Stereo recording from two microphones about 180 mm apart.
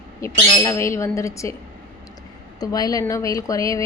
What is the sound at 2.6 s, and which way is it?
A woman's voice, 20° left (ahead or behind).